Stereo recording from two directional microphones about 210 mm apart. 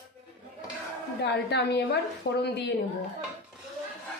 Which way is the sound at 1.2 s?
55° left (ahead or behind).